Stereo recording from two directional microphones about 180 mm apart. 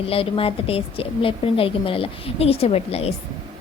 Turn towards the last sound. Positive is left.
turn(degrees=35)  # may be behind; listen again after turning